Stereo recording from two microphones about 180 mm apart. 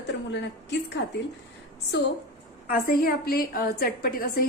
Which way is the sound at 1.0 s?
70° left (ahead or behind).